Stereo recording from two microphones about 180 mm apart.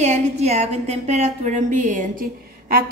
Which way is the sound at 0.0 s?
40° right (ahead or behind).